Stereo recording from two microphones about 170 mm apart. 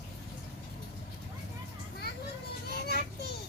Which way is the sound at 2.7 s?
70° left (ahead or behind).